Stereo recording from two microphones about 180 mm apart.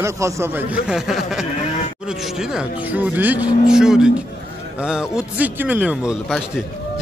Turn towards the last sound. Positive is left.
turn(degrees=-5)  # may be behind; listen again after turning